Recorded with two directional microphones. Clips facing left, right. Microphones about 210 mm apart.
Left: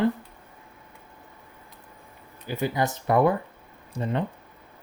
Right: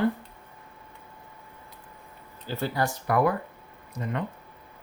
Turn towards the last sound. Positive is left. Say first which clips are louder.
# left 4 dB
turn(degrees=30)  # may be behind; listen again after turning